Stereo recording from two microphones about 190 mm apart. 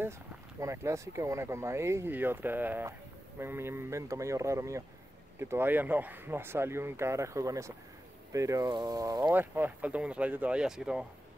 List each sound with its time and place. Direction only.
0.6 s speech: 15° right (ahead or behind)